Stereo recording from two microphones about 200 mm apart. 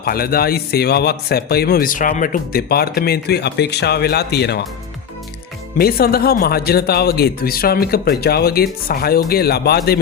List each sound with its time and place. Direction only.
0.0 s speech: 50° left (ahead or behind)
5.7 s speech: 50° left (ahead or behind)